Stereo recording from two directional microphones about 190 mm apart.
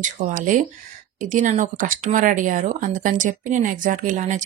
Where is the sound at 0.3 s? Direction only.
45° right (ahead or behind).